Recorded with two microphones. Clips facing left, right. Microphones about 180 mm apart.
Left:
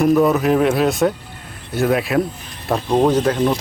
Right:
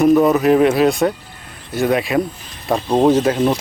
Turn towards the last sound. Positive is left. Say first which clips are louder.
# right 2 dB
turn(degrees=-10)  # may be behind; listen again after turning